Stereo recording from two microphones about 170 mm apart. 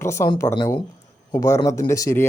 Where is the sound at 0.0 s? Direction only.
15° left (ahead or behind).